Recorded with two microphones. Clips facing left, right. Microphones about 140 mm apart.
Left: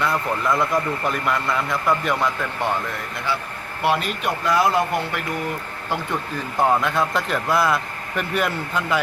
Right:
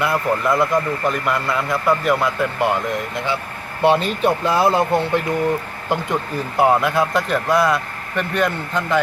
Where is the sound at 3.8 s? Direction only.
30° right (ahead or behind).